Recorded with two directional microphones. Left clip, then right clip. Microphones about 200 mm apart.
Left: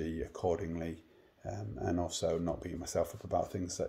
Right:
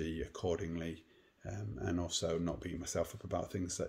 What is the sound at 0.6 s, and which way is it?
Speech, 10° right (ahead or behind).